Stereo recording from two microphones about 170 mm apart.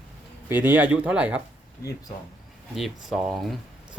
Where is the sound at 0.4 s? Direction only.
10° right (ahead or behind).